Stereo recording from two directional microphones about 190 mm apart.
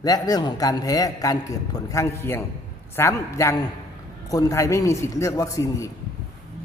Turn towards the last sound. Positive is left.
turn(degrees=15)  # may be behind; listen again after turning